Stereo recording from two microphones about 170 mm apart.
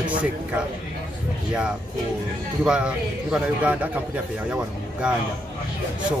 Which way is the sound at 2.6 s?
5° right (ahead or behind).